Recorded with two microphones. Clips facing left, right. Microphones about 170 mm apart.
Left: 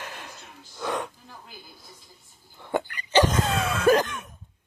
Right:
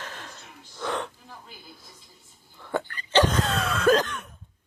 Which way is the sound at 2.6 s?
20° left (ahead or behind).